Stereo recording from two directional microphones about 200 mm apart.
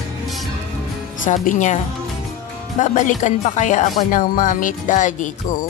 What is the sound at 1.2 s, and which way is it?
Speech, 40° left (ahead or behind).